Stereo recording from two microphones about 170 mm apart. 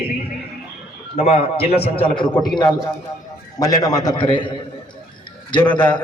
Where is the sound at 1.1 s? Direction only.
40° left (ahead or behind).